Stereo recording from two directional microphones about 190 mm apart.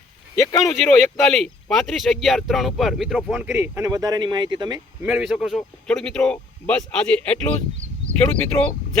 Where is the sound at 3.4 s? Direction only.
15° right (ahead or behind).